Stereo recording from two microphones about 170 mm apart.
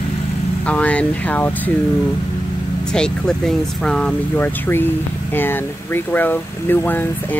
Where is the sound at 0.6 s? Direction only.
10° left (ahead or behind).